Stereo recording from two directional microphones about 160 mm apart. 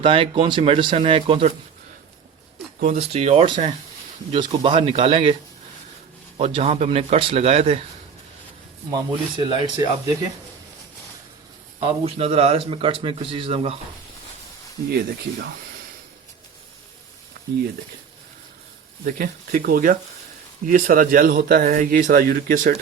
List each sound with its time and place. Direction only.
0.0 s a man's voice: 35° right (ahead or behind)
2.8 s a man's voice: 45° right (ahead or behind)
8.9 s speech: 30° right (ahead or behind)
11.8 s a man's voice: 35° right (ahead or behind)
14.8 s speech: 85° right
19.0 s speech: 60° right (ahead or behind)